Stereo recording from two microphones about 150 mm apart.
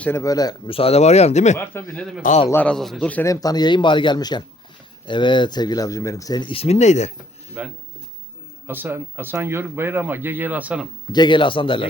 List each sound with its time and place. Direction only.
0.0 s speech: 20° left (ahead or behind)
0.7 s speech: 40° left (ahead or behind)
2.0 s a man's voice: centre (ahead or behind)
3.2 s speech: 25° left (ahead or behind); by 7.1 s 50° left (ahead or behind)
7.6 s speech: 10° right (ahead or behind)
11.1 s speech: 30° left (ahead or behind)